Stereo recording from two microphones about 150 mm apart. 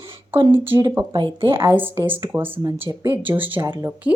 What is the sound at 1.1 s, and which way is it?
Speech, 35° right (ahead or behind).